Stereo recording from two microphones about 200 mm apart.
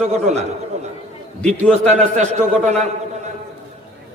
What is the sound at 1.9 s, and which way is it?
Speech, 35° right (ahead or behind).